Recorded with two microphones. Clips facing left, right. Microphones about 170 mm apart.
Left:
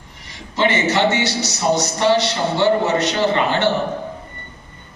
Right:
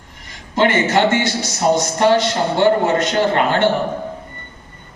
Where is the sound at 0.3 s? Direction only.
50° right (ahead or behind).